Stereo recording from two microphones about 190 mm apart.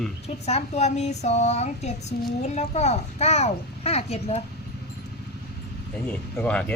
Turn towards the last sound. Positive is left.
turn(degrees=5)  # may be behind; listen again after turning